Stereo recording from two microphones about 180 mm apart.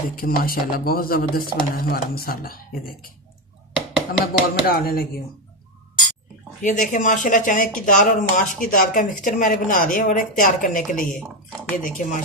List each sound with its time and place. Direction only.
0.1 s speech: 55° left (ahead or behind)
4.3 s speech: 55° left (ahead or behind)
6.6 s speech: 45° left (ahead or behind)